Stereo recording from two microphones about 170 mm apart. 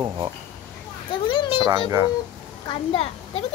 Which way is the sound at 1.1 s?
30° left (ahead or behind).